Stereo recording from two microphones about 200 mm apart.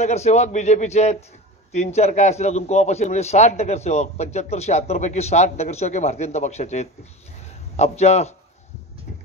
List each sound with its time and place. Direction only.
0.0 s a man's voice: 35° left (ahead or behind)